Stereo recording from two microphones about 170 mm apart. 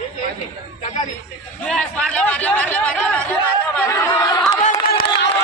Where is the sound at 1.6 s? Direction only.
5° left (ahead or behind).